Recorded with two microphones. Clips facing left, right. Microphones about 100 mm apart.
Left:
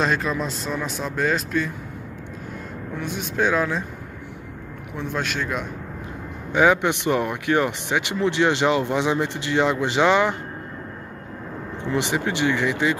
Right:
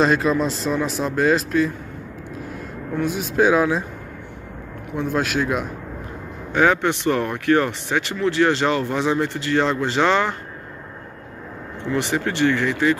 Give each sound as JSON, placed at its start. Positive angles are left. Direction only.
{"t": 0.0, "sound": "speech", "side_deg": 0}
{"t": 3.0, "sound": "speech", "side_deg": -5}
{"t": 4.9, "sound": "speech", "side_deg": 0}
{"t": 6.5, "sound": "speech", "side_deg": 15}
{"t": 11.8, "sound": "speech", "side_deg": 20}